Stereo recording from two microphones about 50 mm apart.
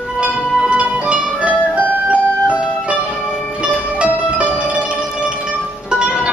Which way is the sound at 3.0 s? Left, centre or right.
Centre.